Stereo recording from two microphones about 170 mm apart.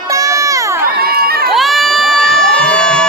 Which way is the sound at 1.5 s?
Centre (ahead or behind).